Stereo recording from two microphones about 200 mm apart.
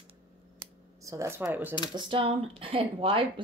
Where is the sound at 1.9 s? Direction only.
25° right (ahead or behind).